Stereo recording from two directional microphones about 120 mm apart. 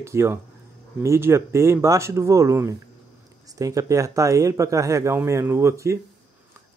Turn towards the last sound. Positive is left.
turn(degrees=-25)  # may be behind; listen again after turning